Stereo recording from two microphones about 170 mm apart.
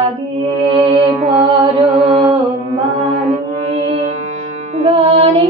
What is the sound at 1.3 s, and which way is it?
Music, 25° right (ahead or behind).